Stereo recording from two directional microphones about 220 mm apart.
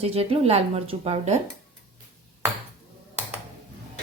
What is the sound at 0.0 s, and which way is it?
A woman's voice, 25° right (ahead or behind).